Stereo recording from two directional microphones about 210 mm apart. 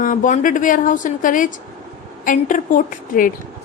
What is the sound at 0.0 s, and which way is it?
A woman's voice, 40° left (ahead or behind).